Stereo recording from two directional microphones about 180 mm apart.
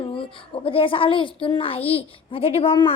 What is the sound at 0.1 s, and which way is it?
A woman's voice, 30° left (ahead or behind).